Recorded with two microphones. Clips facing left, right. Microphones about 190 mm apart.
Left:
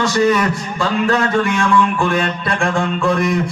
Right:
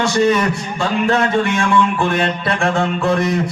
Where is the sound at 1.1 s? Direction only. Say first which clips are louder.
Right 1 dB; 25° right (ahead or behind).